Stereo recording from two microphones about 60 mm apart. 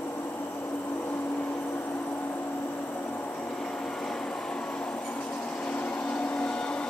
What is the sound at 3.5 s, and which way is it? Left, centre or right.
Vehicle, centre.